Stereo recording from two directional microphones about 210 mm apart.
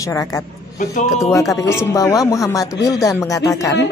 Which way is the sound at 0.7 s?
35° left (ahead or behind).